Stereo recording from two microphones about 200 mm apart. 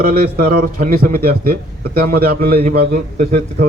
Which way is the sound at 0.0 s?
50° right (ahead or behind).